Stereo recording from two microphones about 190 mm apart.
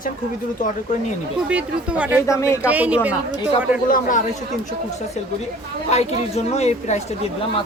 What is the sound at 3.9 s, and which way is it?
Speech, 45° left (ahead or behind).